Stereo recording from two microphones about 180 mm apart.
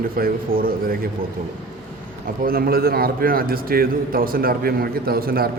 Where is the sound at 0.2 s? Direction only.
55° right (ahead or behind).